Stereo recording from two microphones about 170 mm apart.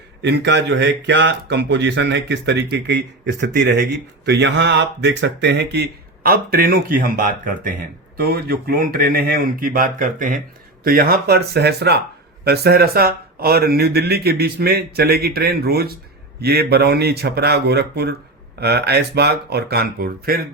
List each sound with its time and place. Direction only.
0.2 s speech: 90° right; by 20.5 s 60° right (ahead or behind)